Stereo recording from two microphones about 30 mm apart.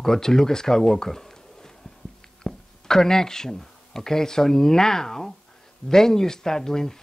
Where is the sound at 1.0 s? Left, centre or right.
Centre.